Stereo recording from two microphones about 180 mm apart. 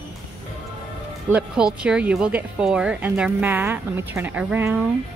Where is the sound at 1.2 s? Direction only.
5° right (ahead or behind).